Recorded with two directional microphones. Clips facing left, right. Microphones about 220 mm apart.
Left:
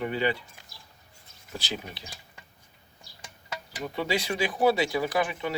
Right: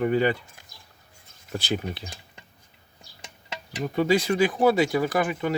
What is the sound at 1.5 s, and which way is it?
Speech, 55° right (ahead or behind).